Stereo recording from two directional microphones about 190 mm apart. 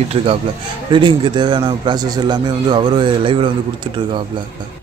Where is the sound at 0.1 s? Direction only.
30° right (ahead or behind).